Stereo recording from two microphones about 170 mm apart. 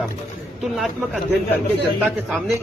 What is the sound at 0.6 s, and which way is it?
Speech, centre (ahead or behind).